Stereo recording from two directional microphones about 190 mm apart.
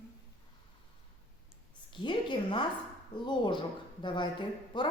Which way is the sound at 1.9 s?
25° left (ahead or behind).